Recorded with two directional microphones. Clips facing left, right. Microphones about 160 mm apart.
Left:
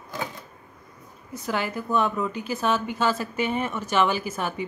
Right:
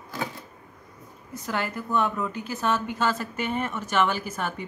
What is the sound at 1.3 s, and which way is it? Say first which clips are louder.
A woman's voice: left 2 dB; 10° left (ahead or behind).